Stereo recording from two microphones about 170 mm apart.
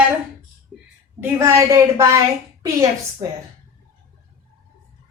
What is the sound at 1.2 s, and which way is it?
Speech, 15° right (ahead or behind).